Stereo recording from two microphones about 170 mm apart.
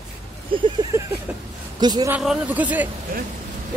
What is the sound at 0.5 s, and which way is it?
A woman's voice, 30° right (ahead or behind).